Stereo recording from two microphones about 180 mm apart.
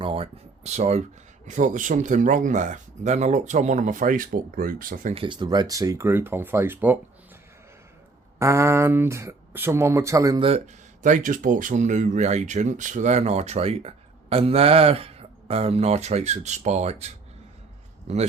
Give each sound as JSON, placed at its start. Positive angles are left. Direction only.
{"t": 0.0, "sound": "speech", "side_deg": -30}
{"t": 5.1, "sound": "speech", "side_deg": -30}
{"t": 8.4, "sound": "speech", "side_deg": -15}
{"t": 11.0, "sound": "speech", "side_deg": -45}
{"t": 18.1, "sound": "speech", "side_deg": -40}